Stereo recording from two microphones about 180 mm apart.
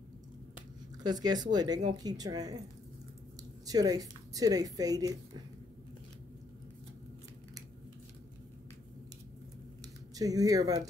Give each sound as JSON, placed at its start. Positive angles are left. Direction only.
{"t": 1.0, "sound": "a woman's voice", "side_deg": -20}
{"t": 3.6, "sound": "a woman's voice", "side_deg": -20}
{"t": 10.1, "sound": "a woman's voice", "side_deg": -20}